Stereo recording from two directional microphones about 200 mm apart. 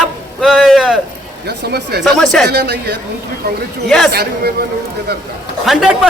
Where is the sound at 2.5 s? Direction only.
55° right (ahead or behind).